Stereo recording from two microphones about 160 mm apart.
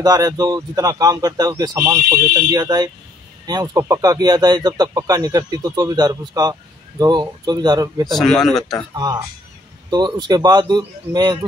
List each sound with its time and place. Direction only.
0.0 s speech: 25° right (ahead or behind)
8.1 s speech: centre (ahead or behind)
8.9 s speech: 25° right (ahead or behind)